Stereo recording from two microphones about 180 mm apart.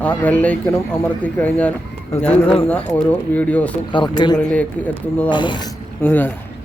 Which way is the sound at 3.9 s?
25° left (ahead or behind).